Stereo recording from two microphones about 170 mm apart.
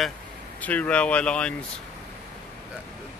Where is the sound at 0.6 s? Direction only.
10° left (ahead or behind).